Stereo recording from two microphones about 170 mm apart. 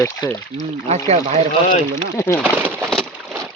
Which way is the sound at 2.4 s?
10° right (ahead or behind).